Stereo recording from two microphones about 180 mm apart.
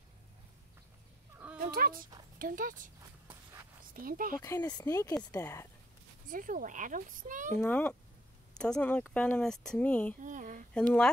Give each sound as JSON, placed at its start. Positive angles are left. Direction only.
{"t": 1.6, "sound": "a sound", "side_deg": -55}
{"t": 2.3, "sound": "speech", "side_deg": -50}
{"t": 3.9, "sound": "speech", "side_deg": -50}
{"t": 4.4, "sound": "speech", "side_deg": 20}
{"t": 6.2, "sound": "speech", "side_deg": -50}
{"t": 7.5, "sound": "speech", "side_deg": 10}
{"t": 10.2, "sound": "a sound", "side_deg": -45}
{"t": 10.7, "sound": "speech", "side_deg": 5}